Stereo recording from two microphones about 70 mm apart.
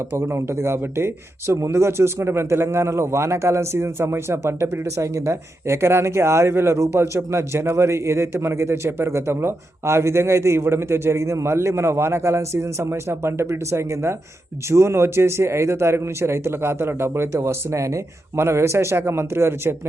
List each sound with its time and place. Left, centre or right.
0.2 s a man's voice: right